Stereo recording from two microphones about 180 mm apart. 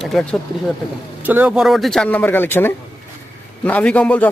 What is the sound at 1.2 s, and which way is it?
A man's voice, 10° right (ahead or behind).